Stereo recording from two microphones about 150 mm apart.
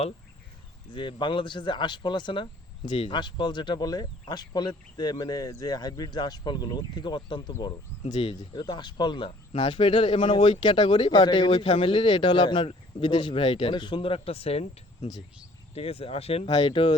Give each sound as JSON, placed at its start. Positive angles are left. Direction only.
{"t": 0.9, "sound": "speech", "side_deg": 30}